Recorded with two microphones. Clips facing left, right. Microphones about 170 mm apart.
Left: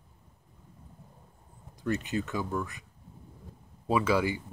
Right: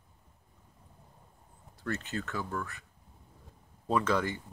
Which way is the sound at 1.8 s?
15° left (ahead or behind).